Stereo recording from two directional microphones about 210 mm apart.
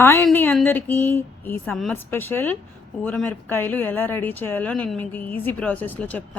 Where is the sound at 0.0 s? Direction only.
10° left (ahead or behind).